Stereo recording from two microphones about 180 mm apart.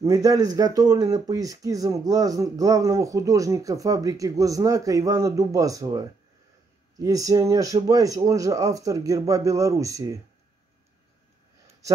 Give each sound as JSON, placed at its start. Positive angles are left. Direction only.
{"t": 0.0, "sound": "speech", "side_deg": -20}